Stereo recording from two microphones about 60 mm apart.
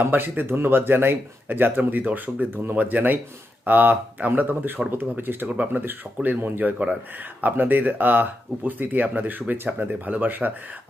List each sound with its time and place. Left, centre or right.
0.0 s speech: right